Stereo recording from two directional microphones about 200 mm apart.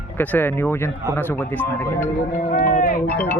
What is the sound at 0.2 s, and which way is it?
Speech, 10° left (ahead or behind).